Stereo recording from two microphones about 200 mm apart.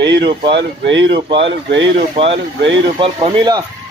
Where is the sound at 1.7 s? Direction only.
60° right (ahead or behind).